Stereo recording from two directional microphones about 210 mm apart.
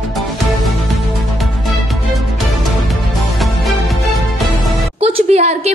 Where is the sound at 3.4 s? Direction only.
Centre (ahead or behind).